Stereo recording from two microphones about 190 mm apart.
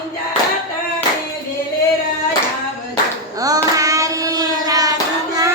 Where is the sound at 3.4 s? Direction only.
20° right (ahead or behind).